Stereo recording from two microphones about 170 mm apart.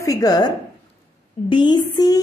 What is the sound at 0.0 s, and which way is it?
Speech, 20° left (ahead or behind).